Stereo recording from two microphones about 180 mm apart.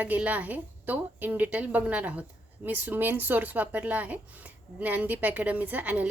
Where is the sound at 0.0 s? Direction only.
10° right (ahead or behind).